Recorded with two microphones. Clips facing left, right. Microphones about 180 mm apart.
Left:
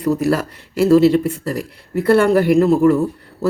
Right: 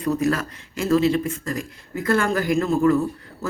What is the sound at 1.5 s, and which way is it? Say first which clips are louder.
Speech: left 5 dB; 70° left (ahead or behind).